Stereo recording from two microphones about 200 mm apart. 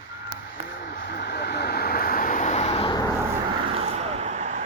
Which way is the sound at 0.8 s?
55° left (ahead or behind).